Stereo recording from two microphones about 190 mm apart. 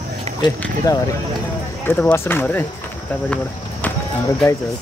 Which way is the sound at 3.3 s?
10° left (ahead or behind).